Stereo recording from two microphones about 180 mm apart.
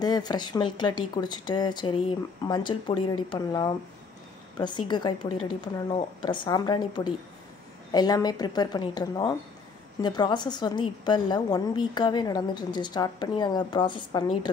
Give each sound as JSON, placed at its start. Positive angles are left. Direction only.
{"t": 0.0, "sound": "a woman's voice", "side_deg": 20}